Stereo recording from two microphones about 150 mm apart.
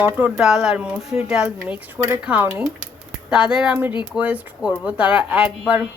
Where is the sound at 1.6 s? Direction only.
15° right (ahead or behind).